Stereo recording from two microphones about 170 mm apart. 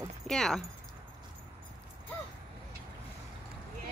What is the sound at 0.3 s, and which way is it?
Speech, 5° left (ahead or behind).